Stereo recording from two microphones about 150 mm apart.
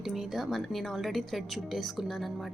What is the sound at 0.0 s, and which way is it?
A woman's voice, centre (ahead or behind).